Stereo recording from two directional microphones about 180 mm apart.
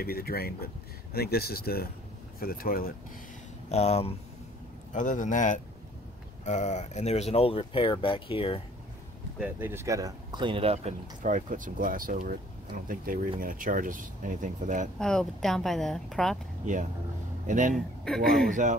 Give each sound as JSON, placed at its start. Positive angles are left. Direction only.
{"t": 0.0, "sound": "speech", "side_deg": 60}
{"t": 3.6, "sound": "a man's voice", "side_deg": 35}
{"t": 9.4, "sound": "speech", "side_deg": -10}
{"t": 15.0, "sound": "speech", "side_deg": 5}
{"t": 17.5, "sound": "speech", "side_deg": -45}
{"t": 18.0, "sound": "speech", "side_deg": 0}
{"t": 18.5, "sound": "speech", "side_deg": -45}